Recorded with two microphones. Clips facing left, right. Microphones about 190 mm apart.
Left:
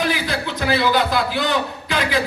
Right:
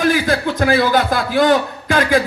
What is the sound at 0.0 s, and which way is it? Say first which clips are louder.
A man's voice: right 6 dB; 50° right (ahead or behind).